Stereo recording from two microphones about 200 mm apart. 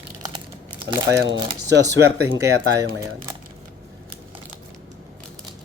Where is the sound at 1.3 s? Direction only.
60° right (ahead or behind).